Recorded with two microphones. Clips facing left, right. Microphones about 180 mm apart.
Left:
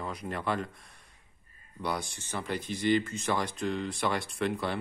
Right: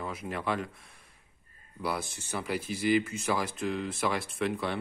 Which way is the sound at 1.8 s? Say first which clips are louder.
Even; centre (ahead or behind).